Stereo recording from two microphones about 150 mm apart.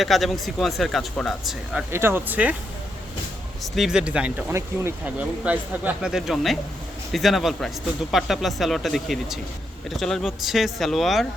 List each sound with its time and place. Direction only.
0.0 s speech: centre (ahead or behind)
1.9 s speech: 15° right (ahead or behind)
3.6 s speech: centre (ahead or behind)